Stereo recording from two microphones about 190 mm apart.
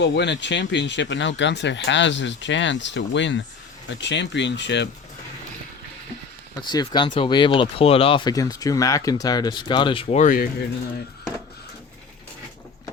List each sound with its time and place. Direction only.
0.0 s speech: 65° left (ahead or behind)
6.6 s speech: 25° left (ahead or behind); by 10.5 s 45° left (ahead or behind)